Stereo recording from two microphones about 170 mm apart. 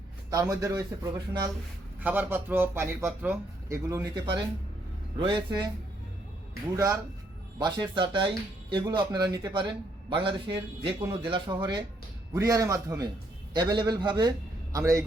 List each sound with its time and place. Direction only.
0.3 s a man's voice: 20° right (ahead or behind)
2.0 s a man's voice: 10° right (ahead or behind)
5.2 s a man's voice: 25° right (ahead or behind)
6.7 s a man's voice: 20° right (ahead or behind)
11.0 s a man's voice: 15° right (ahead or behind)